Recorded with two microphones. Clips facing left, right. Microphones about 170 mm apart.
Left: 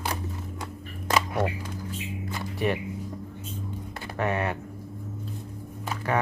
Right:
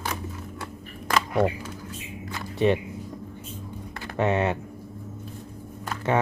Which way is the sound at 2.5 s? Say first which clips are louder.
Right 6 dB; 25° right (ahead or behind).